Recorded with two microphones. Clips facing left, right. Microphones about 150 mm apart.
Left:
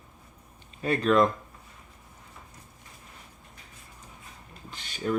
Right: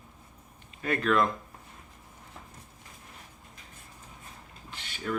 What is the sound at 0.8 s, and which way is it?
Speech, 30° left (ahead or behind).